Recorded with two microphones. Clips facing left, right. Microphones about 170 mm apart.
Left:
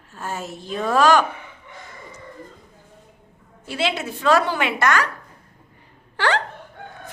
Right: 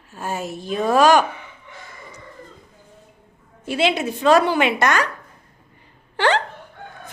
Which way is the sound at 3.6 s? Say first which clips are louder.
Right 4 dB; 15° right (ahead or behind).